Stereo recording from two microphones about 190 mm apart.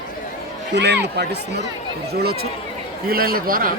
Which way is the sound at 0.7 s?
60° right (ahead or behind).